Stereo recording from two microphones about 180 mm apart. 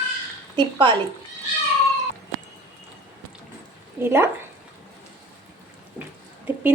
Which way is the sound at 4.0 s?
15° right (ahead or behind).